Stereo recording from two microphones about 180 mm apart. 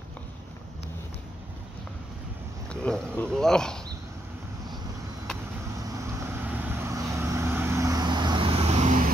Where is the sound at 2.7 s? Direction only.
5° left (ahead or behind).